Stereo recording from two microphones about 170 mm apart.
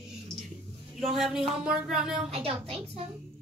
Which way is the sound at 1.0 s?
Centre (ahead or behind).